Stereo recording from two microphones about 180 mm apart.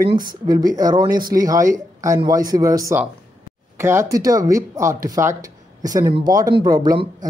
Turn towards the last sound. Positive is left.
turn(degrees=-20)  # may be behind; listen again after turning